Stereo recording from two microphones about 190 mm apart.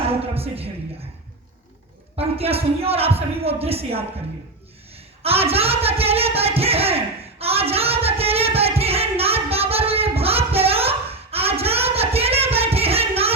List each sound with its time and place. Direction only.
0.2 s speech: 30° right (ahead or behind)
2.1 s speech: 30° right (ahead or behind)
5.2 s a sound: 30° right (ahead or behind)